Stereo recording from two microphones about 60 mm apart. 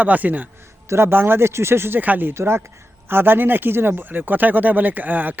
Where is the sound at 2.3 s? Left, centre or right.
Right.